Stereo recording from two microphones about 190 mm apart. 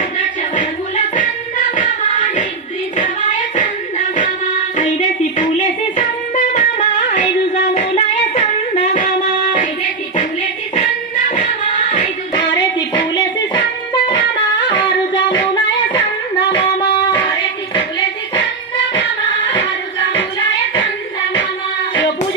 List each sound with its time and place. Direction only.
0.5 s music: 45° left (ahead or behind)
3.5 s music: 40° left (ahead or behind)
4.8 s a sound: 40° left (ahead or behind)
6.0 s music: 40° left (ahead or behind)
10.8 s music: 40° left (ahead or behind)
13.5 s music: 25° left (ahead or behind)